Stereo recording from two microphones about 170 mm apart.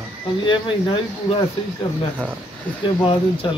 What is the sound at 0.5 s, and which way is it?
Speech, 30° left (ahead or behind).